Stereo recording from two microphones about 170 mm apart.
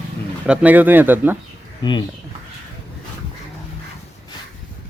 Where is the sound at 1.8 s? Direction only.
25° left (ahead or behind).